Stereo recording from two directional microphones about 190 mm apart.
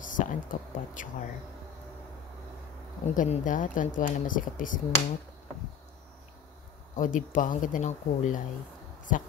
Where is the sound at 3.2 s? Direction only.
45° left (ahead or behind).